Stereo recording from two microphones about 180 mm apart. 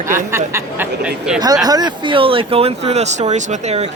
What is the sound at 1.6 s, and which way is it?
Speech, 20° right (ahead or behind).